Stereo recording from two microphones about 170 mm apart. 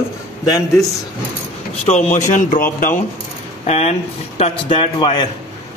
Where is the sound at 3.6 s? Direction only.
40° left (ahead or behind).